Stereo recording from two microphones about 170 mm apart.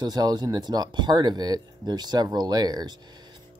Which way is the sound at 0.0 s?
20° right (ahead or behind).